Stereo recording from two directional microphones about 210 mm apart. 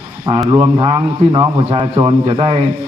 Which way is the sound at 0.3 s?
15° right (ahead or behind).